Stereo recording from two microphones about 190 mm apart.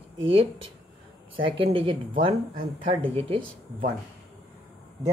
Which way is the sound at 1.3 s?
25° right (ahead or behind).